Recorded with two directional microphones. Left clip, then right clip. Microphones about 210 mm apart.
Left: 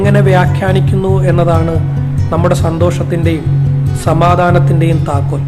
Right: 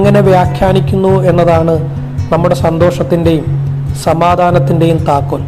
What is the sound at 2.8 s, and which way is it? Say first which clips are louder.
Speech: right 4 dB; 15° right (ahead or behind).